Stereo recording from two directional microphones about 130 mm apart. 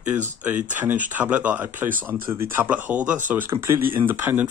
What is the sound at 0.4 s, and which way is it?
Speech, 15° right (ahead or behind).